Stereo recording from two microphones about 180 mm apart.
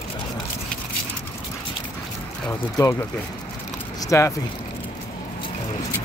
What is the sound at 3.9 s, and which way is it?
Speech, 15° left (ahead or behind).